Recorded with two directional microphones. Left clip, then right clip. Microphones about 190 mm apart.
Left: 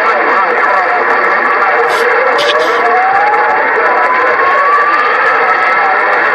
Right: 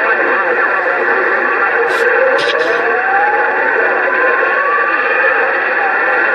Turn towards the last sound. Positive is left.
turn(degrees=40)  # may be behind; listen again after turning